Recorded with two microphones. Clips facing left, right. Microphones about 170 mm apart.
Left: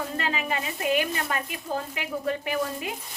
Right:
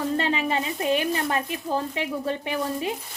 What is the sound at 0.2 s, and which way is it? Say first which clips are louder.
A woman's voice: right 4 dB; 30° right (ahead or behind).